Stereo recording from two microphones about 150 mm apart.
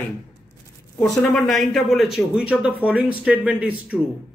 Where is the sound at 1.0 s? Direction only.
5° left (ahead or behind).